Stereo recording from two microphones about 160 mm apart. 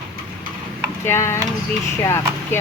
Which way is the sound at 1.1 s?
15° left (ahead or behind).